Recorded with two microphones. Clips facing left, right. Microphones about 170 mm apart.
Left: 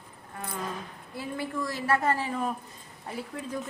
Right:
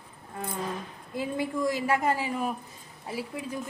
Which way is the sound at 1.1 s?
15° right (ahead or behind).